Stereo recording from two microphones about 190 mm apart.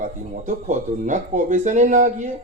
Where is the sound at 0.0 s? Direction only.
40° right (ahead or behind).